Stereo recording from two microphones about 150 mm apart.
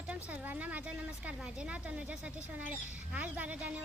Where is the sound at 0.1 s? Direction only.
10° right (ahead or behind).